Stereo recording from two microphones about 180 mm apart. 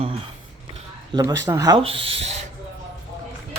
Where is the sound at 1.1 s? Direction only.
20° right (ahead or behind).